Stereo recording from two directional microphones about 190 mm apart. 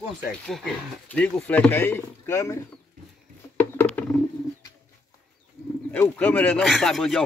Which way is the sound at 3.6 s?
10° left (ahead or behind).